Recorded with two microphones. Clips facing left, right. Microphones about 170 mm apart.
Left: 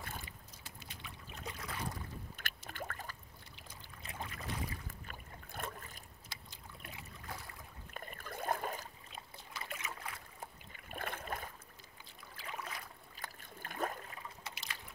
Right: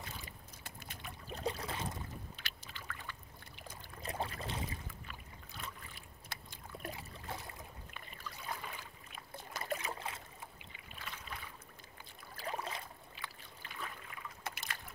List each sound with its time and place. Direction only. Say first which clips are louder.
0.7 s boat: right 3 dB; 50° right (ahead or behind)
1.3 s boat: right 7 dB; 30° right (ahead or behind)
2.3 s boat: left 5 dB; 50° left (ahead or behind)
3.5 s boat: right 6 dB; 45° right (ahead or behind); by 4.7 s 25° right (ahead or behind)
5.0 s boat: left 1 dB; 50° left (ahead or behind)
6.2 s boat: right 4 dB; 55° right (ahead or behind)
7.2 s boat: right 3 dB; 20° right (ahead or behind)
7.9 s boat: left 4 dB; 50° left (ahead or behind)
9.4 s trickle: right 8 dB; 45° right (ahead or behind); by 10.2 s 25° right (ahead or behind)
10.4 s boat: left 2 dB; 50° left (ahead or behind)
12.4 s boat: right 4 dB; 35° right (ahead or behind)
13.1 s a sound: even; 45° left (ahead or behind)
14.4 s liquid: right 4 dB; 50° right (ahead or behind)